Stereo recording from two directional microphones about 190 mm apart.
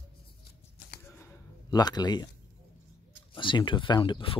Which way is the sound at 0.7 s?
55° left (ahead or behind).